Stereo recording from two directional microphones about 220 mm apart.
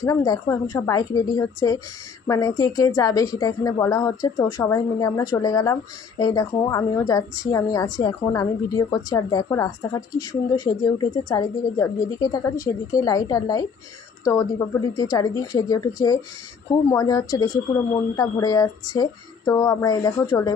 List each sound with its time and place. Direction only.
0.0 s a woman's voice: 15° left (ahead or behind)